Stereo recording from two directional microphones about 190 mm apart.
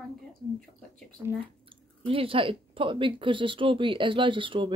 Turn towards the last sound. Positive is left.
turn(degrees=-25)  # may be behind; listen again after turning